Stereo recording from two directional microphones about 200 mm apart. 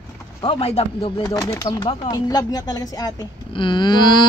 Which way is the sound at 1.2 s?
15° left (ahead or behind).